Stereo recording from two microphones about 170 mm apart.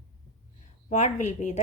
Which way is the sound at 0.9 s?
45° left (ahead or behind).